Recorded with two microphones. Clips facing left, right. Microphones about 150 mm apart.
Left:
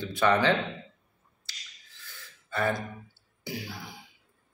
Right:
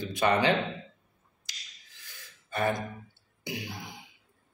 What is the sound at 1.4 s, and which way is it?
Gasp, 15° right (ahead or behind).